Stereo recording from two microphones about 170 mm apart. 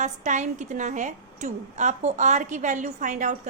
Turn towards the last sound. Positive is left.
turn(degrees=-45)  # may be behind; listen again after turning